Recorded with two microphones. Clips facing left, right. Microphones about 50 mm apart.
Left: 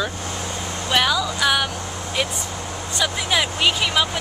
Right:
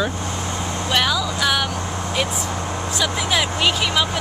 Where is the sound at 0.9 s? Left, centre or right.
Centre.